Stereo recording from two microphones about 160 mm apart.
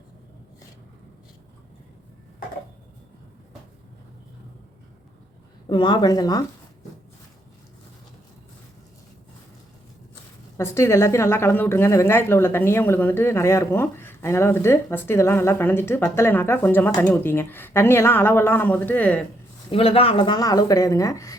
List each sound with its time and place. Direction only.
5.6 s speech: 30° left (ahead or behind)
10.6 s a woman's voice: 15° left (ahead or behind)
19.7 s speech: 35° left (ahead or behind); by 21.3 s 20° left (ahead or behind)